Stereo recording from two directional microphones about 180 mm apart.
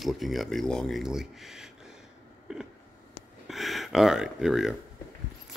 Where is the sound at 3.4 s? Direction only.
Centre (ahead or behind).